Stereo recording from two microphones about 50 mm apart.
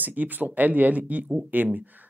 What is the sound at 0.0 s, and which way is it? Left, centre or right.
Speech, right.